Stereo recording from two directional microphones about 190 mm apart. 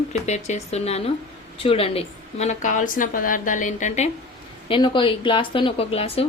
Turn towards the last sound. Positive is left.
turn(degrees=30)  # may be behind; listen again after turning